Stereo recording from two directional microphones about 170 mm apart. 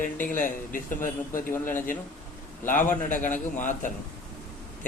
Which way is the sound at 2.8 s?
50° left (ahead or behind).